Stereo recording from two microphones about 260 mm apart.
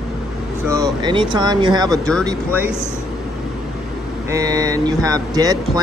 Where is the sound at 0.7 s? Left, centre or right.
Centre.